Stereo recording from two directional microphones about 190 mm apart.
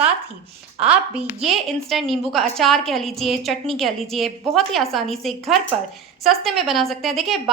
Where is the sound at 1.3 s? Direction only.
Centre (ahead or behind).